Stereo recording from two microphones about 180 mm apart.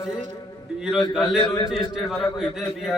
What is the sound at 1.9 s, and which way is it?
Speech, centre (ahead or behind).